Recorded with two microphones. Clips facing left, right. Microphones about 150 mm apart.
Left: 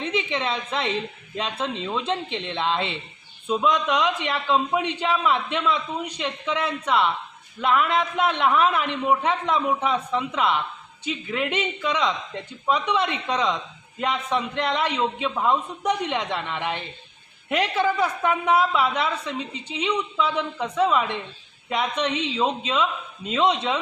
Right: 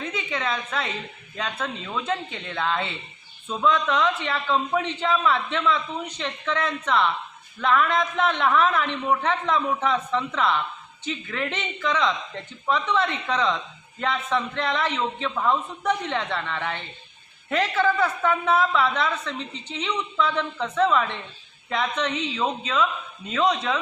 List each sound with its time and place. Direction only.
0.0 s a woman's voice: 30° left (ahead or behind)
3.4 s a woman's voice: 15° left (ahead or behind)
22.2 s speech: 30° left (ahead or behind)